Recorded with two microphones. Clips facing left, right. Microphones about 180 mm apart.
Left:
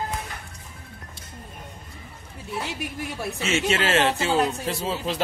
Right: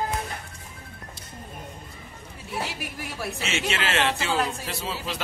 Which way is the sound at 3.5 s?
40° left (ahead or behind).